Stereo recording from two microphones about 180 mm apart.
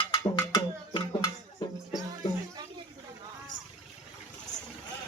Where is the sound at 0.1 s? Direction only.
20° left (ahead or behind).